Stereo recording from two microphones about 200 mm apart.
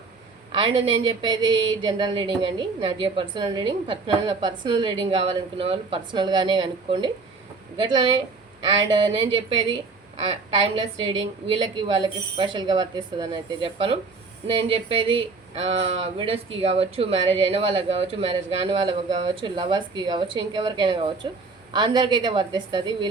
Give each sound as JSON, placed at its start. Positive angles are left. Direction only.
{"t": 0.5, "sound": "speech", "side_deg": -25}
{"t": 10.2, "sound": "speech", "side_deg": -25}